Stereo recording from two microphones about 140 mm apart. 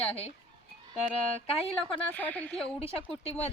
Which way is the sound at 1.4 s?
45° left (ahead or behind).